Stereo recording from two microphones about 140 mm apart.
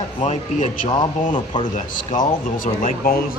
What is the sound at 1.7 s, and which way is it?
Speech, 70° left (ahead or behind).